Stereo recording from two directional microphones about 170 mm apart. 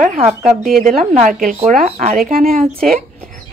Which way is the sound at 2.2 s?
60° right (ahead or behind).